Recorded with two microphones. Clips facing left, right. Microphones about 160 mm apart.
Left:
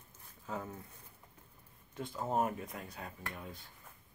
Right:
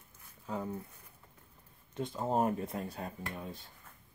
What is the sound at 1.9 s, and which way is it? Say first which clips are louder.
Speech: right 3 dB; 20° right (ahead or behind).